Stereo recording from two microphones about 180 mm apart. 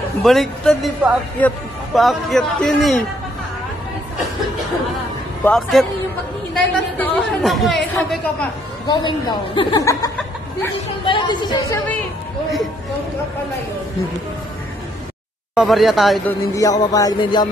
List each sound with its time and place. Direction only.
0.2 s speech: centre (ahead or behind)
5.4 s a woman's voice: centre (ahead or behind)
8.8 s a woman's voice: 25° left (ahead or behind)
15.5 s speech: centre (ahead or behind)
16.3 s a woman's voice: 20° left (ahead or behind)